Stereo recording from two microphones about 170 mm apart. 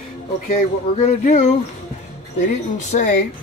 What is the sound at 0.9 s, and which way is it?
Speech, 40° left (ahead or behind).